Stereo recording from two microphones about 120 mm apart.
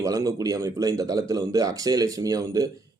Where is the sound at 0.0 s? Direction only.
30° right (ahead or behind).